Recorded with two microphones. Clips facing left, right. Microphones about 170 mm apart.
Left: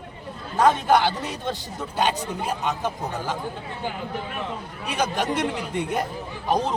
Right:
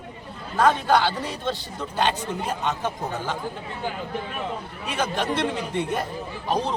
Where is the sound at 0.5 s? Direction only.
15° left (ahead or behind).